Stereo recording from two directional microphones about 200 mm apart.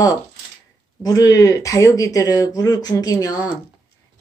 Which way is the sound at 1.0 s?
20° left (ahead or behind).